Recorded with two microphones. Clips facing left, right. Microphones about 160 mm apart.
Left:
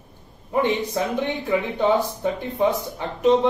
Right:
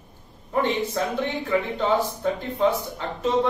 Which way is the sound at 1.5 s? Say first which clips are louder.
Left 3 dB; 15° left (ahead or behind).